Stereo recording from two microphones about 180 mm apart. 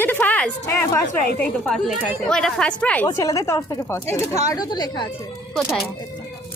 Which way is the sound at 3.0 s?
20° left (ahead or behind).